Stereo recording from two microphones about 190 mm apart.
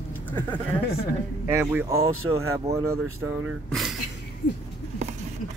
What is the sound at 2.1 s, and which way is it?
Speech, 90° right.